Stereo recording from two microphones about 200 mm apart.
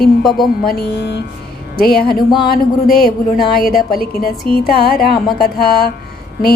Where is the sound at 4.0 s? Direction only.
50° left (ahead or behind).